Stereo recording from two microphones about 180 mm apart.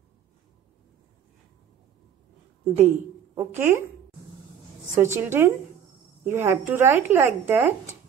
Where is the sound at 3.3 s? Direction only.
15° right (ahead or behind).